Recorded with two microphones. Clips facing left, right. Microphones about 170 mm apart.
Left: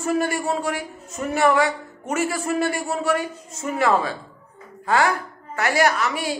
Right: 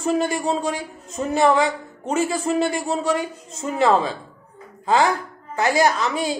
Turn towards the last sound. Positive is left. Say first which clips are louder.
# right 2 dB
turn(degrees=-20)  # may be behind; listen again after turning